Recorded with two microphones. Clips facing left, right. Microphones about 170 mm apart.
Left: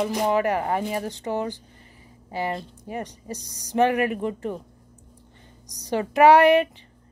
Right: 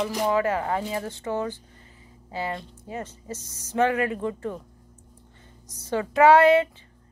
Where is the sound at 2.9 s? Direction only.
15° left (ahead or behind).